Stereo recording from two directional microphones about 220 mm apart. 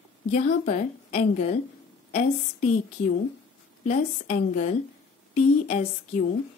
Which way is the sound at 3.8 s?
30° left (ahead or behind).